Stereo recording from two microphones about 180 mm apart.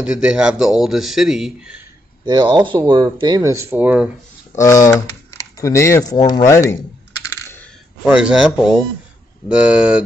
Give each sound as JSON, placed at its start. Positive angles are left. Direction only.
{"t": 0.0, "sound": "speech", "side_deg": -5}
{"t": 2.2, "sound": "speech", "side_deg": -25}
{"t": 4.6, "sound": "speech", "side_deg": 15}
{"t": 8.0, "sound": "speech", "side_deg": -5}